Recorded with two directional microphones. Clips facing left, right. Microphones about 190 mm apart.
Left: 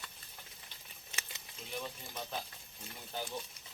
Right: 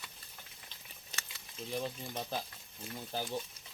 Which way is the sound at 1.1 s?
35° right (ahead or behind).